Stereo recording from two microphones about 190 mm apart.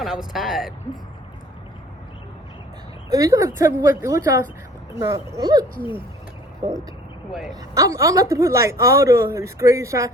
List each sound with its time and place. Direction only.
0.0 s speech: centre (ahead or behind)
3.1 s a woman's voice: 20° right (ahead or behind)